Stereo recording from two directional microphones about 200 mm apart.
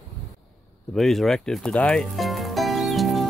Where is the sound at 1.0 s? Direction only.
Centre (ahead or behind).